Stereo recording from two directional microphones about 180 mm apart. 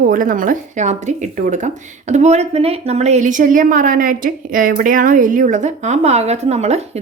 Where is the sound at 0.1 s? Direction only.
50° right (ahead or behind).